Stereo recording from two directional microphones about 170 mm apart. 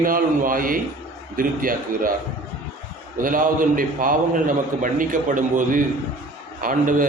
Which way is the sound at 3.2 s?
55° right (ahead or behind).